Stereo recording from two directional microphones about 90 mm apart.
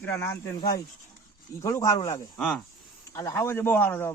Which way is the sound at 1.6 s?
35° left (ahead or behind).